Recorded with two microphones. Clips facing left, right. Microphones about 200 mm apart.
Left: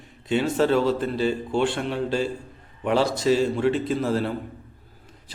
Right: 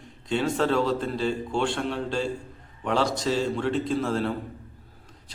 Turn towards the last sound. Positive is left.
turn(degrees=5)  # may be behind; listen again after turning